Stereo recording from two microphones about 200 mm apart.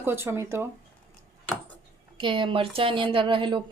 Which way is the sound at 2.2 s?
25° right (ahead or behind).